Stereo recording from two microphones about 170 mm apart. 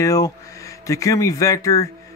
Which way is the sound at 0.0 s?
20° left (ahead or behind).